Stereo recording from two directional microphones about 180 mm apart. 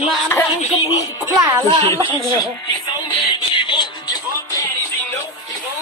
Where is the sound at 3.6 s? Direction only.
25° left (ahead or behind).